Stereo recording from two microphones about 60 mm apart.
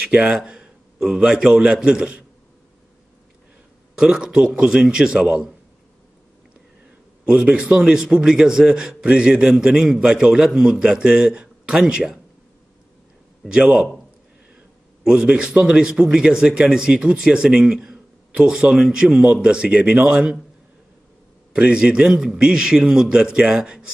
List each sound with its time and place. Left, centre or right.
0.0 s speech: right
0.4 s a man's voice: centre
3.9 s a man's voice: centre
7.2 s a man's voice: centre
13.5 s a man's voice: centre
15.0 s a man's voice: centre
21.5 s a man's voice: centre